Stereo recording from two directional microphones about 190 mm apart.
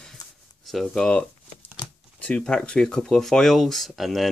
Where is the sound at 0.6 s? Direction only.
Centre (ahead or behind).